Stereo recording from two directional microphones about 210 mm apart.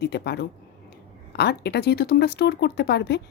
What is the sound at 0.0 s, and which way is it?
A woman's voice, 50° left (ahead or behind).